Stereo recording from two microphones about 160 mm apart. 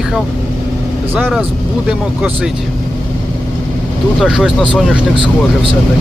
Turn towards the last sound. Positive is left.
turn(degrees=0)  # may be behind; listen again after turning